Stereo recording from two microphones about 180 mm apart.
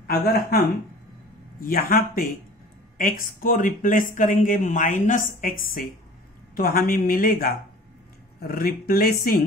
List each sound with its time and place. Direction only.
0.0 s speech: 60° left (ahead or behind)
1.6 s speech: 55° left (ahead or behind)